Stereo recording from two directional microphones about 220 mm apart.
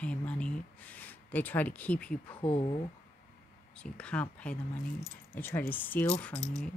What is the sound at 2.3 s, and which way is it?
Speech, 25° left (ahead or behind).